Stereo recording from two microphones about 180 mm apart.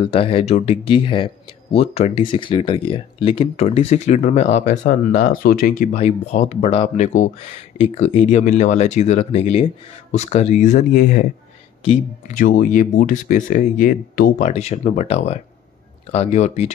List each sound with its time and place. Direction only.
0.0 s speech: 30° left (ahead or behind)
12.4 s speech: 45° left (ahead or behind)
14.5 s speech: 35° left (ahead or behind)